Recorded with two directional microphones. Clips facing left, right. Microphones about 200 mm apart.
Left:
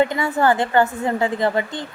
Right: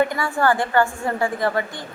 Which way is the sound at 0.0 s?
20° left (ahead or behind).